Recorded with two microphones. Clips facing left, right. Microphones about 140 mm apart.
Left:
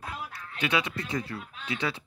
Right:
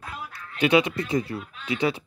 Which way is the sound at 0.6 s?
20° right (ahead or behind).